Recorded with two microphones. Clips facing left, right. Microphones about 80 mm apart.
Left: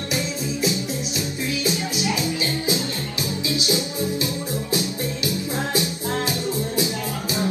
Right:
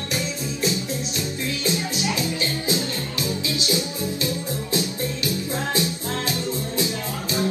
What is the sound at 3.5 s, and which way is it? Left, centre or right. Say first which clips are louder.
Music: left 4 dB; left.